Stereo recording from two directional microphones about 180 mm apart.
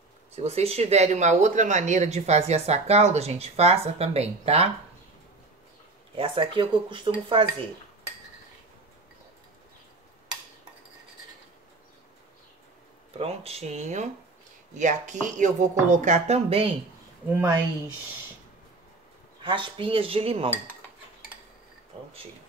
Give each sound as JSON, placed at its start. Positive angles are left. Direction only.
{"t": 0.4, "sound": "a woman's voice", "side_deg": -35}
{"t": 6.1, "sound": "speech", "side_deg": -30}
{"t": 13.2, "sound": "a woman's voice", "side_deg": -35}
{"t": 19.4, "sound": "a woman's voice", "side_deg": -30}